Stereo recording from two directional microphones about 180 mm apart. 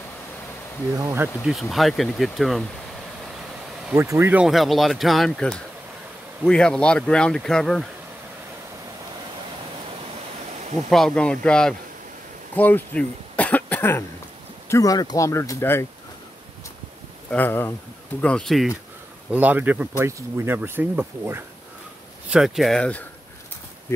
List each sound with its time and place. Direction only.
1.0 s speech: 15° right (ahead or behind)
1.4 s speech: centre (ahead or behind)
3.9 s speech: 15° right (ahead or behind); by 7.8 s 5° left (ahead or behind)
10.9 s speech: centre (ahead or behind)
17.3 s speech: 10° left (ahead or behind)
19.3 s speech: 10° right (ahead or behind)
22.3 s speech: centre (ahead or behind)